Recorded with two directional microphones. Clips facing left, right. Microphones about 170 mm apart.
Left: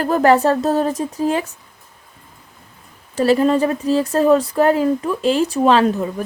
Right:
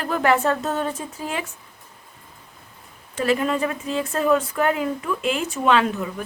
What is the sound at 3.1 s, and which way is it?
Speech, 35° left (ahead or behind).